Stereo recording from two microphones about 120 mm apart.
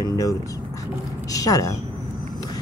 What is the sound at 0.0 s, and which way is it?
Vehicle, 30° left (ahead or behind).